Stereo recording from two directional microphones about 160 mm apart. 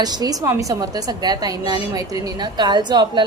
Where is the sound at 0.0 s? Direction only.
25° right (ahead or behind).